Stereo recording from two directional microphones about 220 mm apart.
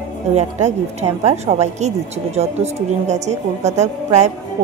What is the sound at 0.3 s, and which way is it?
A woman's voice, 30° right (ahead or behind).